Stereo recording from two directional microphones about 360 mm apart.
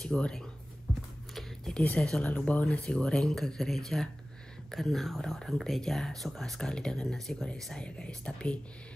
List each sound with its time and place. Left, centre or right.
0.0 s speech: centre